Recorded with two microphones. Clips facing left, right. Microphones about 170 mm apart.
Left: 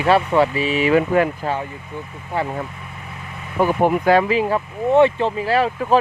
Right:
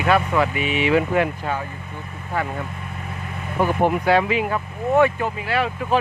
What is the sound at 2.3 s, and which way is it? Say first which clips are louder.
Speech: left 2 dB; 25° left (ahead or behind).